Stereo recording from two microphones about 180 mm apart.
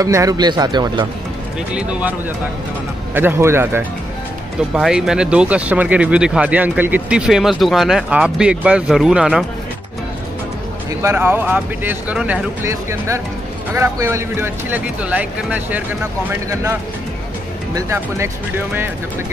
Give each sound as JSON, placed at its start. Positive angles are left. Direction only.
{"t": 0.0, "sound": "speech", "side_deg": -20}
{"t": 1.7, "sound": "speech", "side_deg": -5}
{"t": 3.2, "sound": "speech", "side_deg": -15}
{"t": 4.7, "sound": "speech", "side_deg": -5}
{"t": 11.0, "sound": "speech", "side_deg": -15}
{"t": 17.7, "sound": "speech", "side_deg": -15}